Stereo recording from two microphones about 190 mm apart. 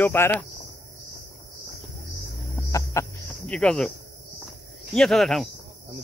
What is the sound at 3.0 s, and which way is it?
Cricket, 15° left (ahead or behind).